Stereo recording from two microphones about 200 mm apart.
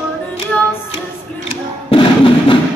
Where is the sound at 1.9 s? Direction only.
25° left (ahead or behind).